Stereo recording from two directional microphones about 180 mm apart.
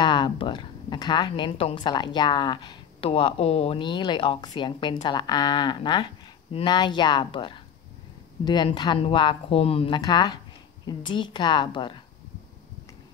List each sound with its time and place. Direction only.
0.0 s a woman's voice: 25° left (ahead or behind)